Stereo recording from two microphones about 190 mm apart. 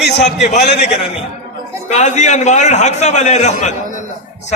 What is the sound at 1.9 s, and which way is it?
A man's voice, 40° left (ahead or behind).